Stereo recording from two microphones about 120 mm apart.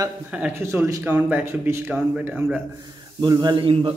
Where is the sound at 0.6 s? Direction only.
25° right (ahead or behind).